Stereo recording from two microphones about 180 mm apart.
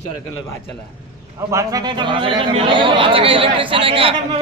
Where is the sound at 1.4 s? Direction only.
15° right (ahead or behind).